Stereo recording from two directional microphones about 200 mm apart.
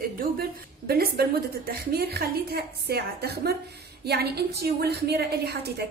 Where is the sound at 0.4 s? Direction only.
50° right (ahead or behind).